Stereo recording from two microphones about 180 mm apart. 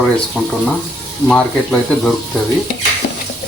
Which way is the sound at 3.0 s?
60° left (ahead or behind).